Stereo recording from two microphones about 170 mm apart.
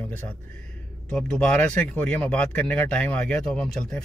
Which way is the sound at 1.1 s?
5° left (ahead or behind).